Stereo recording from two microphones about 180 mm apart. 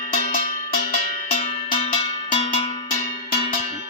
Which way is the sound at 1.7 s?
25° left (ahead or behind).